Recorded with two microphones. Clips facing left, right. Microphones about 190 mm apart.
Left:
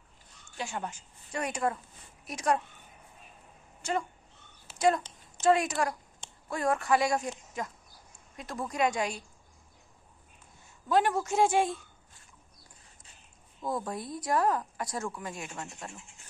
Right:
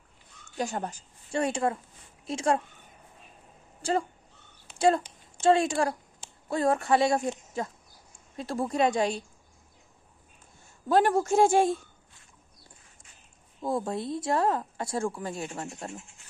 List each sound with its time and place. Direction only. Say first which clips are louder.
0.6 s speech: right 5 dB; 40° right (ahead or behind)
3.8 s speech: right 4 dB; 35° right (ahead or behind)
10.9 s speech: right 3 dB; 35° right (ahead or behind)
11.1 s speech: right 4 dB; 45° right (ahead or behind)
13.6 s speech: right 4 dB; 25° right (ahead or behind)